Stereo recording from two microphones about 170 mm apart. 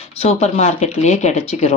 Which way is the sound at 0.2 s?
40° left (ahead or behind).